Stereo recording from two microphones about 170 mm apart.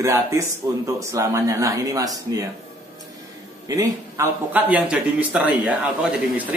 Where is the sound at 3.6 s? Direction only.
20° right (ahead or behind).